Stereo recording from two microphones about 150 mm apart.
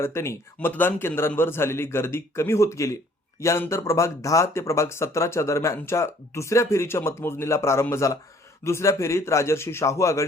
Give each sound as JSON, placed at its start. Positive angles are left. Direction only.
{"t": 0.0, "sound": "speech", "side_deg": 15}